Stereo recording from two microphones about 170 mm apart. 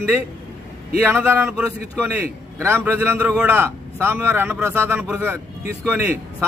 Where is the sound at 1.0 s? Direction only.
10° right (ahead or behind).